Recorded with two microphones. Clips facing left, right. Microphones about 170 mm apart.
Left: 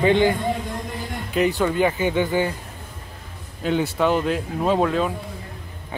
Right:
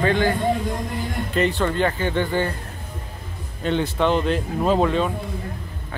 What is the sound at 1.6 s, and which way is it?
Speech, 10° left (ahead or behind).